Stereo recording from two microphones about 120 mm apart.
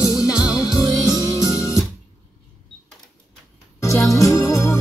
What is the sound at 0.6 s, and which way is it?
Music, 30° left (ahead or behind).